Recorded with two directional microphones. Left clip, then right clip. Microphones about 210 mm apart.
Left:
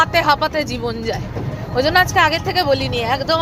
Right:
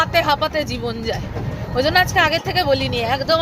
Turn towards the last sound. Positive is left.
turn(degrees=0)  # may be behind; listen again after turning